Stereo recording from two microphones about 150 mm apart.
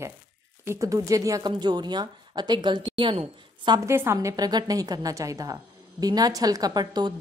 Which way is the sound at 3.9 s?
15° right (ahead or behind).